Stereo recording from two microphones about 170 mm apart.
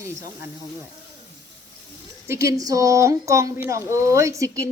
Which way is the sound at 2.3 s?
15° right (ahead or behind).